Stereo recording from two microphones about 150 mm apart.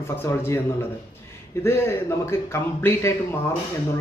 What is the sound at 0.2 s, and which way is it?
Speech, 15° left (ahead or behind).